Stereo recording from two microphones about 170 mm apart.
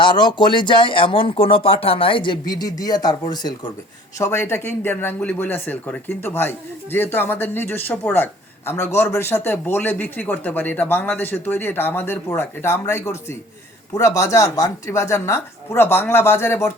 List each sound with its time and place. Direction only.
0.0 s speech: 25° left (ahead or behind)